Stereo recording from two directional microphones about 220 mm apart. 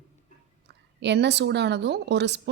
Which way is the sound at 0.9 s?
50° right (ahead or behind).